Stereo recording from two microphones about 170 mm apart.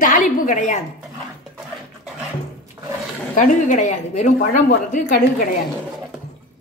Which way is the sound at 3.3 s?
50° left (ahead or behind).